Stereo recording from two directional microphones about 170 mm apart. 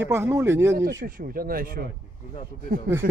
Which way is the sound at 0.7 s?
90° right.